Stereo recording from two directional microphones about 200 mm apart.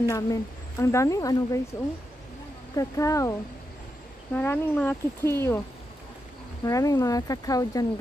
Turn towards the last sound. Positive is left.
turn(degrees=20)  # may be behind; listen again after turning